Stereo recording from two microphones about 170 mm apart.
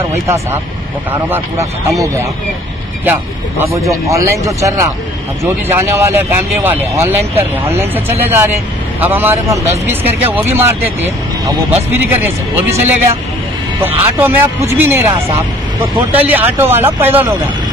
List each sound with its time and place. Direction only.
1.3 s speech: 15° right (ahead or behind)
3.1 s speech: 15° right (ahead or behind)
16.1 s speech: 10° right (ahead or behind)